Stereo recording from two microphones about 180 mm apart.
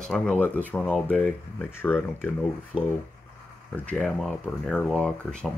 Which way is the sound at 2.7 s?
Centre (ahead or behind).